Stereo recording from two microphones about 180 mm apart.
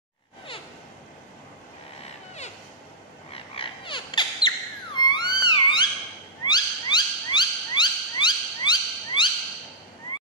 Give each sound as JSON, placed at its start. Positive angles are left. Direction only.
{"t": 3.5, "sound": "bird", "side_deg": 30}
{"t": 6.4, "sound": "owl", "side_deg": 25}